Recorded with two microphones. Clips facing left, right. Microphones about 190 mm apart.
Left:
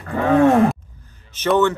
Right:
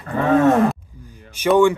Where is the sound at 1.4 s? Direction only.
10° right (ahead or behind).